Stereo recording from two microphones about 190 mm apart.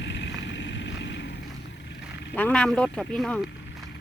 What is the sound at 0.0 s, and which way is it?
Vehicle, 70° left (ahead or behind).